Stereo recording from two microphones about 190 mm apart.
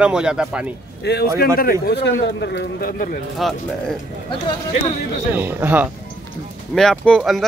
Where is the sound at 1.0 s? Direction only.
55° left (ahead or behind).